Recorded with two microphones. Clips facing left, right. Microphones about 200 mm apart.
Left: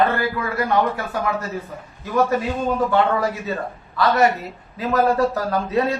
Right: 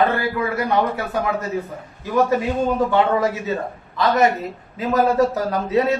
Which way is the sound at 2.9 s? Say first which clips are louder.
Right 1 dB; 20° right (ahead or behind).